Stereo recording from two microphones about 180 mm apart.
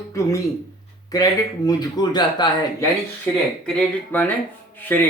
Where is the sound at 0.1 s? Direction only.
15° left (ahead or behind).